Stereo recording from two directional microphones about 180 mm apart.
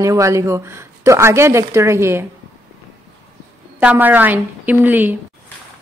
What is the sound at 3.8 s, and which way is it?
Speech, 10° right (ahead or behind).